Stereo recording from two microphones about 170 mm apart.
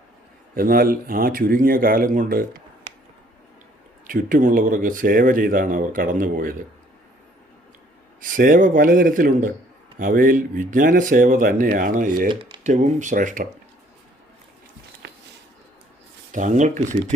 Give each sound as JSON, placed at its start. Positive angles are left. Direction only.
{"t": 0.5, "sound": "speech", "side_deg": -55}
{"t": 4.0, "sound": "speech", "side_deg": -55}
{"t": 8.2, "sound": "speech", "side_deg": -50}
{"t": 12.3, "sound": "speech", "side_deg": -30}
{"t": 12.6, "sound": "speech", "side_deg": -45}
{"t": 15.0, "sound": "a sound", "side_deg": -90}
{"t": 16.3, "sound": "speech", "side_deg": -45}